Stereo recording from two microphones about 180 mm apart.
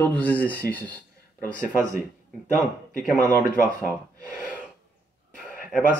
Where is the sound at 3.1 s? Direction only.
10° left (ahead or behind).